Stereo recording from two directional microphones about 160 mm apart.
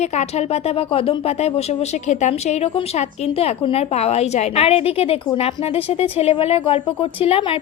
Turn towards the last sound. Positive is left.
turn(degrees=35)  # may be behind; listen again after turning